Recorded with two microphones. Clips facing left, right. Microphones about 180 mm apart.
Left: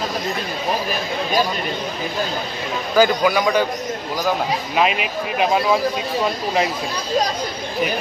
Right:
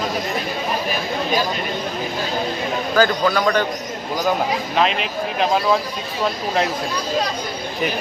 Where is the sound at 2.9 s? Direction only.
10° left (ahead or behind).